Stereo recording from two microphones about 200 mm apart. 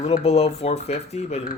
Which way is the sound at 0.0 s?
30° left (ahead or behind).